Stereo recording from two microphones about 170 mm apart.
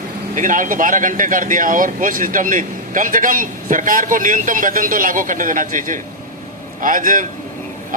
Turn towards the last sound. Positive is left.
turn(degrees=-50)  # may be behind; listen again after turning